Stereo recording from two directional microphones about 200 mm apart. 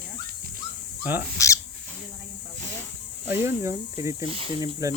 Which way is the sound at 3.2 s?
15° right (ahead or behind).